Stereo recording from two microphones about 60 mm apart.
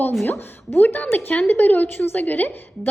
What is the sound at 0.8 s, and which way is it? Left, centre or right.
A woman's voice, left.